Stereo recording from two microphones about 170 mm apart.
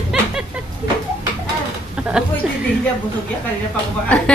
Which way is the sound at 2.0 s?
5° right (ahead or behind).